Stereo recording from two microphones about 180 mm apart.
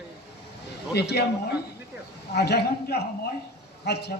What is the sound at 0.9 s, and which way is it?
Speech, 65° left (ahead or behind).